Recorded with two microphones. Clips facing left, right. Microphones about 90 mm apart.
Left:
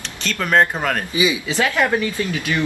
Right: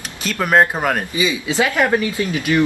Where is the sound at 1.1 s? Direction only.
15° left (ahead or behind).